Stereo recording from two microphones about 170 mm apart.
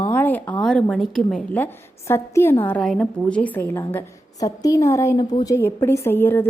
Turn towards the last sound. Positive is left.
turn(degrees=10)  # may be behind; listen again after turning